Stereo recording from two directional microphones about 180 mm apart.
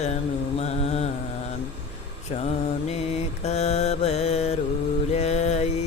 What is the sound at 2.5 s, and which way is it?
Mantra, 35° left (ahead or behind).